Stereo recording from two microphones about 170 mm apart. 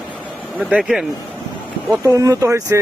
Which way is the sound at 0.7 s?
5° right (ahead or behind).